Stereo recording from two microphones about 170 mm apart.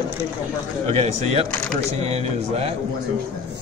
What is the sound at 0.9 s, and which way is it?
Speech, 40° right (ahead or behind).